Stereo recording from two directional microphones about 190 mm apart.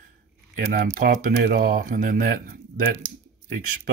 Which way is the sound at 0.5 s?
45° right (ahead or behind).